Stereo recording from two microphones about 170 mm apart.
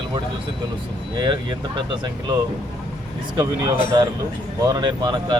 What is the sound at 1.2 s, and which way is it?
Speech, 25° right (ahead or behind).